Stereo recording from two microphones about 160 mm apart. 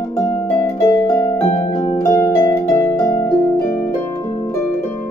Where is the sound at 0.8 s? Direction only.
25° left (ahead or behind).